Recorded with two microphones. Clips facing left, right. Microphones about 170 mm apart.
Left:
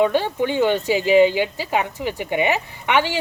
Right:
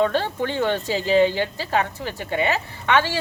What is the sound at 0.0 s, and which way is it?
Speech, 15° left (ahead or behind).